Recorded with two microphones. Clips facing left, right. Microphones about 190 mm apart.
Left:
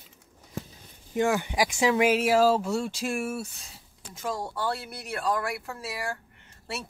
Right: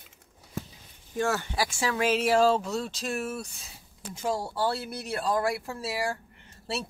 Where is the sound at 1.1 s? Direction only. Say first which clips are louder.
Left 3 dB; 15° left (ahead or behind).